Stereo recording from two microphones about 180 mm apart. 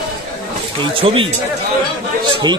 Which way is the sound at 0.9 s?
30° right (ahead or behind).